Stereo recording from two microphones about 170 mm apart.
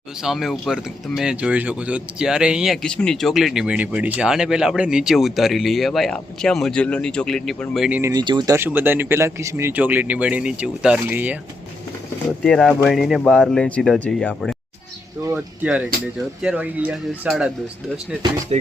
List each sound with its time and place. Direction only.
0.2 s speech: centre (ahead or behind)
7.9 s speech: 10° right (ahead or behind)
8.1 s speech: 25° right (ahead or behind)
8.5 s speech: 10° right (ahead or behind)
12.5 s speech: centre (ahead or behind)
15.3 s speech: 10° right (ahead or behind)
18.5 s music: 40° right (ahead or behind)